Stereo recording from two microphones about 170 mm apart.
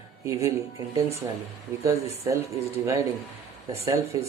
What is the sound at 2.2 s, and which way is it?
Speech, 15° right (ahead or behind).